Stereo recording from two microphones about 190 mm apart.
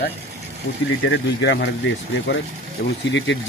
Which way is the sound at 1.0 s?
85° left.